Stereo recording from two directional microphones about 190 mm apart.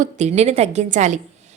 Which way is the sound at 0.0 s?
35° right (ahead or behind).